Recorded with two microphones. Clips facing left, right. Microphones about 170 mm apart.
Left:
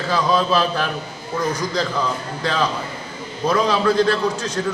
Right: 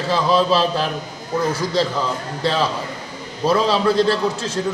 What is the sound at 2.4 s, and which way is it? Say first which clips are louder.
A man's voice: right 2 dB; 30° right (ahead or behind).